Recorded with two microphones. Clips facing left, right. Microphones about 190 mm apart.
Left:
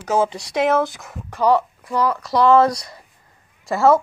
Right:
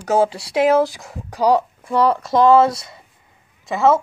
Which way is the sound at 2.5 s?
5° right (ahead or behind).